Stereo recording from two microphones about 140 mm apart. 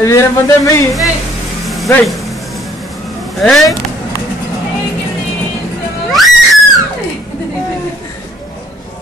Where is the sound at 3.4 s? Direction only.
Centre (ahead or behind).